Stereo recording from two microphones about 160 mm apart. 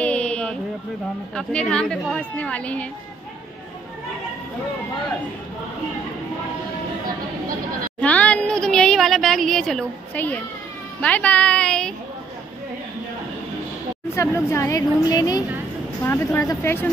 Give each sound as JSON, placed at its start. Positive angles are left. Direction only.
{"t": 0.0, "sound": "a sound", "side_deg": 5}
{"t": 1.3, "sound": "a woman's voice", "side_deg": 5}
{"t": 8.0, "sound": "a woman's voice", "side_deg": 10}
{"t": 14.1, "sound": "a woman's voice", "side_deg": 15}